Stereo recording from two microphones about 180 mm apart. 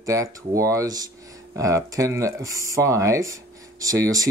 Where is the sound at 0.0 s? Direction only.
15° right (ahead or behind).